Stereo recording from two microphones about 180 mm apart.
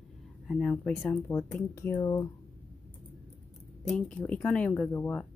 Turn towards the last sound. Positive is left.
turn(degrees=10)  # may be behind; listen again after turning